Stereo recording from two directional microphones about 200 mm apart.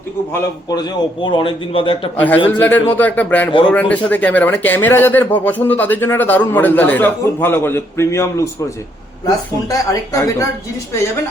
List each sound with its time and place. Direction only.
0.3 s a man's voice: 20° left (ahead or behind)
2.1 s speech: 10° left (ahead or behind)